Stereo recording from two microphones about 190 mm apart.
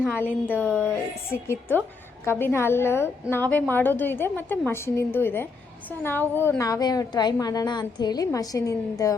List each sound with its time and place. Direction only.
0.3 s speech: 10° right (ahead or behind)
2.2 s a woman's voice: 10° left (ahead or behind)